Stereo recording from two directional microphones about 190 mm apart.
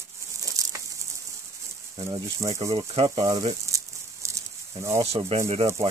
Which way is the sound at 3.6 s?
15° right (ahead or behind).